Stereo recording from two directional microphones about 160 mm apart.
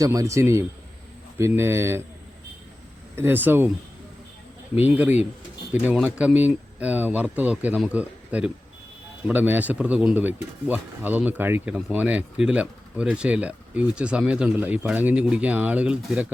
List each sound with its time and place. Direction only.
0.0 s a man's voice: 20° right (ahead or behind)
3.2 s speech: 10° right (ahead or behind)
4.8 s speech: 10° right (ahead or behind)